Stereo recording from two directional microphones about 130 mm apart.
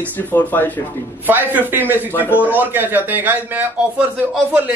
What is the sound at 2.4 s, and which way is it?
A man's voice, 15° right (ahead or behind).